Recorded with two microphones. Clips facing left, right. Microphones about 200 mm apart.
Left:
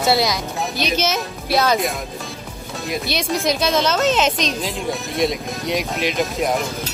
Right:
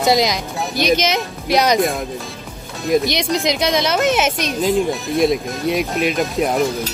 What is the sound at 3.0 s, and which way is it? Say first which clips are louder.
Speech: right 2 dB; 15° right (ahead or behind).